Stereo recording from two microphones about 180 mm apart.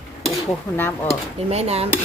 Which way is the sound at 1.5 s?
35° right (ahead or behind).